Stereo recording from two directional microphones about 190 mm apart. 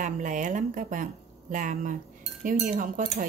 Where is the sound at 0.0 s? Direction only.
40° right (ahead or behind).